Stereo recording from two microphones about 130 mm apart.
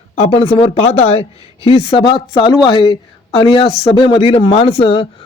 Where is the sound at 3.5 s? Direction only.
40° left (ahead or behind).